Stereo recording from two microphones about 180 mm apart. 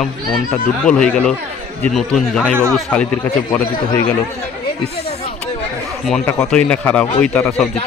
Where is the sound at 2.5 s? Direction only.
15° right (ahead or behind).